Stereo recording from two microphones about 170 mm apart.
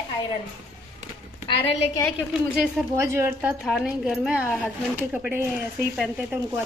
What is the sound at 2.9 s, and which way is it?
Speech, 15° right (ahead or behind).